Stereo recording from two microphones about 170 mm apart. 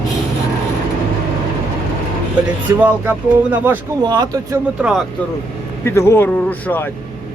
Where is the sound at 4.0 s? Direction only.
25° right (ahead or behind).